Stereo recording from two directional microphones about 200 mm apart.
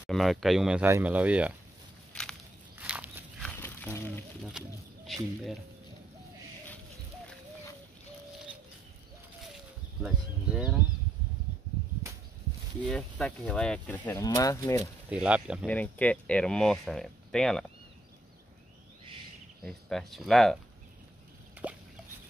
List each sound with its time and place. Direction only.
0.0 s speech: centre (ahead or behind)
2.1 s walk: 5° left (ahead or behind)
2.8 s a sound: 10° right (ahead or behind)
3.4 s a sound: 10° left (ahead or behind)
4.5 s speech: centre (ahead or behind)
10.0 s speech: 5° right (ahead or behind)
12.8 s speech: 5° left (ahead or behind)
15.0 s speech: 5° right (ahead or behind)
15.6 s speech: 5° left (ahead or behind)
19.6 s speech: centre (ahead or behind)
21.6 s a sound: 10° right (ahead or behind)